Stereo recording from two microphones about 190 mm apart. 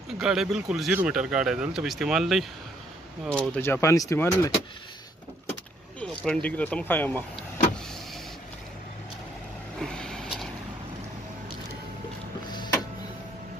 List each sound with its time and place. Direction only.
0.2 s speech: 5° right (ahead or behind)
3.5 s speech: 10° left (ahead or behind)
5.9 s speech: 5° left (ahead or behind)
9.8 s vehicle: 5° left (ahead or behind)
12.4 s printer: 20° left (ahead or behind)